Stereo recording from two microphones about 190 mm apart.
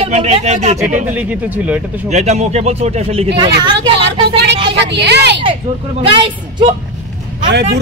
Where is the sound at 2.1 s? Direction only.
35° right (ahead or behind).